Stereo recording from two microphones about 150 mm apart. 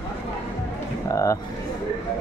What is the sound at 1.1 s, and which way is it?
Speech, 20° left (ahead or behind).